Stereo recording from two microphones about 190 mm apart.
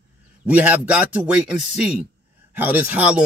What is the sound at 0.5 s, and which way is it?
Speech, 10° right (ahead or behind).